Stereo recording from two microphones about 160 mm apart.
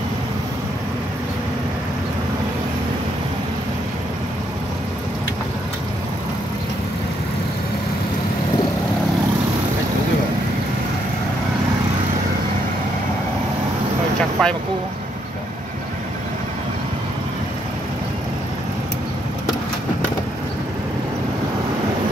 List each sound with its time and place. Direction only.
14.4 s speech: 5° left (ahead or behind)